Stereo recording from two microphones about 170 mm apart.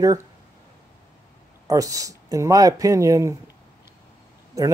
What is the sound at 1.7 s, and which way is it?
Speech, 20° right (ahead or behind).